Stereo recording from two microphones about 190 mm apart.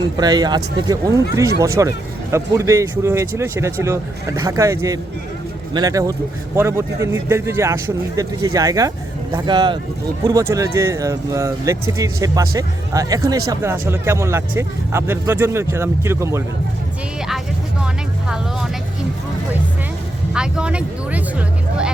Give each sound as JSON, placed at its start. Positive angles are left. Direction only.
{"t": 0.2, "sound": "speech", "side_deg": -20}
{"t": 17.8, "sound": "vehicle", "side_deg": -5}
{"t": 20.3, "sound": "speech", "side_deg": -5}